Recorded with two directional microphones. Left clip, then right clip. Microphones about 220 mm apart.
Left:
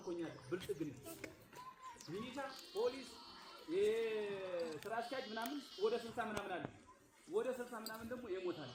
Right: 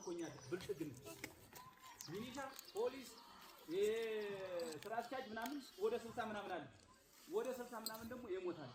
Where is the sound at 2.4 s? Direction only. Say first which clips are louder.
Left 3 dB; 20° left (ahead or behind).